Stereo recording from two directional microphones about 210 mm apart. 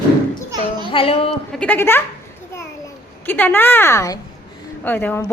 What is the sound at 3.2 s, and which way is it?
A woman's voice, 10° left (ahead or behind).